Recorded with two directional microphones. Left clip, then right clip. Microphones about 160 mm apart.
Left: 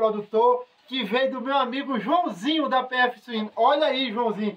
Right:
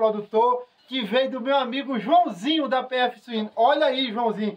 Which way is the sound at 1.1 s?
10° right (ahead or behind).